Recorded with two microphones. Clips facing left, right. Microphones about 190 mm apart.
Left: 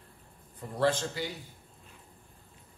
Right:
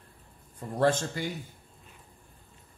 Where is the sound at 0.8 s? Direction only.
50° right (ahead or behind).